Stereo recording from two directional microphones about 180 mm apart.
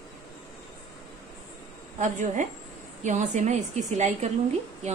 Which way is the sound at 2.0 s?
40° right (ahead or behind).